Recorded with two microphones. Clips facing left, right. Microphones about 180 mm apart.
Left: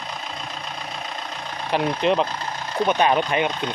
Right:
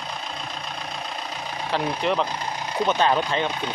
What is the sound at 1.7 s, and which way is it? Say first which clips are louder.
Speech: left 4 dB; 20° left (ahead or behind).